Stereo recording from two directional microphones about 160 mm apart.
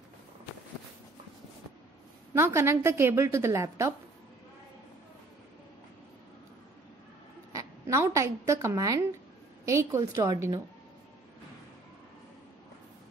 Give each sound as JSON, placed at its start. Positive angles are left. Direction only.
{"t": 2.3, "sound": "a woman's voice", "side_deg": -15}
{"t": 7.5, "sound": "a woman's voice", "side_deg": -20}